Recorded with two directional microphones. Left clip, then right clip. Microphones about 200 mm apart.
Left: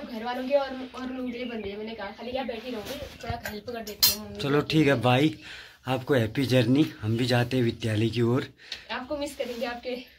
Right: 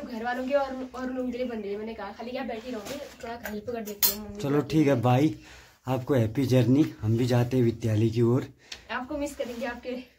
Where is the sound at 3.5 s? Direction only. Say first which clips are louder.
Even; 35° right (ahead or behind).